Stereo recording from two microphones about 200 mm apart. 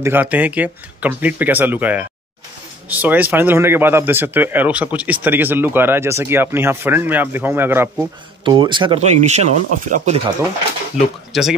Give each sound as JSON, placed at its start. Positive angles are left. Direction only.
{"t": 0.0, "sound": "speech", "side_deg": -10}
{"t": 8.5, "sound": "speech", "side_deg": -25}
{"t": 11.3, "sound": "speech", "side_deg": 0}